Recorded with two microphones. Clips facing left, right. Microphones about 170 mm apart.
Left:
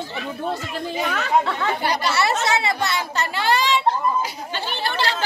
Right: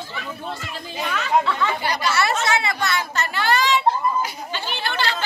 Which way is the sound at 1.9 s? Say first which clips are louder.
Left 2 dB; 30° left (ahead or behind).